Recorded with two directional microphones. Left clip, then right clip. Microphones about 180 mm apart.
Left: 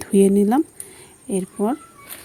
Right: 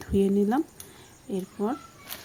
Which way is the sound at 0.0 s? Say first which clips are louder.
Left 8 dB; 35° left (ahead or behind).